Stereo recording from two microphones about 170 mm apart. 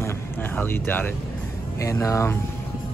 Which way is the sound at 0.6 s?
10° left (ahead or behind).